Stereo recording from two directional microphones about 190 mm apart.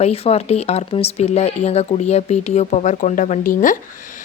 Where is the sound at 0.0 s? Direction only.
35° left (ahead or behind).